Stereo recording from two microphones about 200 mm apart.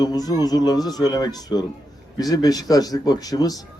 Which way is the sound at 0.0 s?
20° left (ahead or behind).